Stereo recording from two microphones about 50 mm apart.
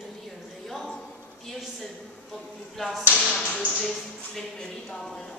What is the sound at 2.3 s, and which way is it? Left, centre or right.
Speech, centre.